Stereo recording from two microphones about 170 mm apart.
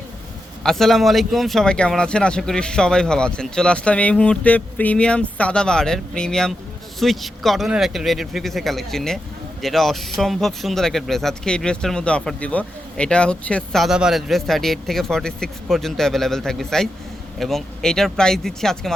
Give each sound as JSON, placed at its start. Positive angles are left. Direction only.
{"t": 0.6, "sound": "speech", "side_deg": 0}